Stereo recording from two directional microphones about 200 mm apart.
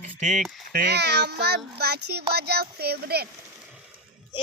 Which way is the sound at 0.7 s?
55° right (ahead or behind).